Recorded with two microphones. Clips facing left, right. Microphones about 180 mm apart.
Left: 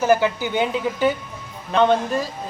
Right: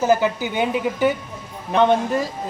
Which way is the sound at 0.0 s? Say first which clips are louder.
Even; 20° right (ahead or behind).